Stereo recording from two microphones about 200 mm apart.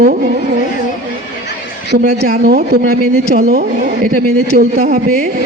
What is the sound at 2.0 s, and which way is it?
Speech, 45° right (ahead or behind).